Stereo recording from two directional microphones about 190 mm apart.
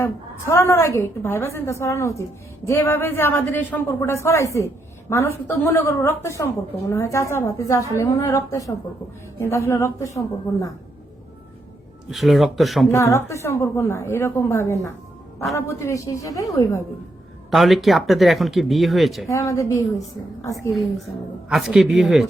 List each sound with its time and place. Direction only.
0.0 s speech: 15° left (ahead or behind)
12.1 s speech: centre (ahead or behind)
12.9 s speech: 15° left (ahead or behind)
17.5 s speech: centre (ahead or behind)
19.3 s speech: 15° left (ahead or behind)
21.5 s speech: centre (ahead or behind)